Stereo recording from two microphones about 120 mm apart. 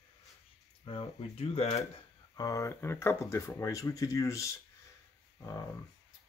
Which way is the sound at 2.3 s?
30° left (ahead or behind).